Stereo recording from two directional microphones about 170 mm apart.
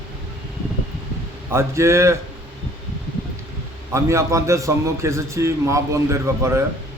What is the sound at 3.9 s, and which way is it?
A man's voice, 15° right (ahead or behind).